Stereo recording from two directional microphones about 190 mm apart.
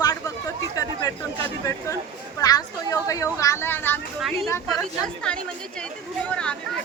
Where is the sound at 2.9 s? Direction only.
15° left (ahead or behind).